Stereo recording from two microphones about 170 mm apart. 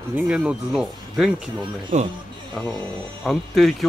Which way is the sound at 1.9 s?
40° right (ahead or behind).